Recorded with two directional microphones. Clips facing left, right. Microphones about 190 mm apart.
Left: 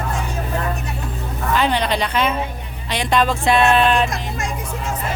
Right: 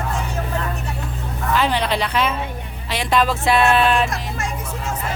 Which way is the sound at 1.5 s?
Centre (ahead or behind).